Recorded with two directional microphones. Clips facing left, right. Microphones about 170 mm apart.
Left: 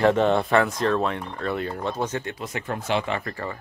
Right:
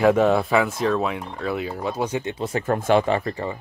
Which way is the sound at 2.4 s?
35° right (ahead or behind).